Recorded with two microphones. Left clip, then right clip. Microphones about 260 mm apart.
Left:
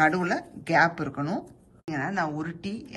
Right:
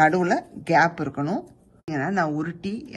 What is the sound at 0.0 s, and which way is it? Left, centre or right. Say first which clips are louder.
Speech: right 4 dB; centre.